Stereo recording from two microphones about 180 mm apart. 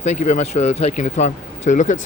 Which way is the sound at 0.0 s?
40° left (ahead or behind).